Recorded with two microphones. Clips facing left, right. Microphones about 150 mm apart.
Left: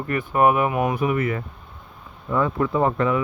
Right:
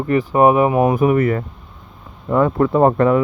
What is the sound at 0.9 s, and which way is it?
Speech, 45° right (ahead or behind).